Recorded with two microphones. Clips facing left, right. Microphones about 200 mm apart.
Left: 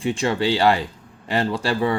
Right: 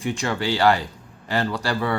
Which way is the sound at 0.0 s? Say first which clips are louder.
Left 4 dB; 25° left (ahead or behind).